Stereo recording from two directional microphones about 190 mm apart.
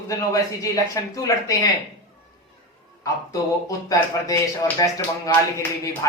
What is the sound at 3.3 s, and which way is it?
Speech, 20° left (ahead or behind).